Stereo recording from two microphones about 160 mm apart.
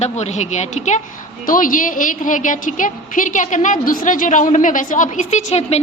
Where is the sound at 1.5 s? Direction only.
60° left (ahead or behind); by 5.8 s 40° left (ahead or behind).